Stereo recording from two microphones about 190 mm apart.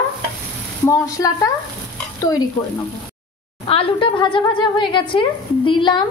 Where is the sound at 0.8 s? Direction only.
20° left (ahead or behind).